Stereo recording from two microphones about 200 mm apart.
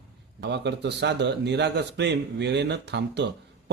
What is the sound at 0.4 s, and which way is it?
Speech, 60° right (ahead or behind).